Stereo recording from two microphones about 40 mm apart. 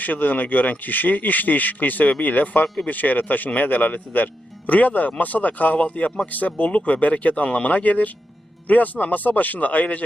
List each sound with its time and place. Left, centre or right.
0.0 s speech: left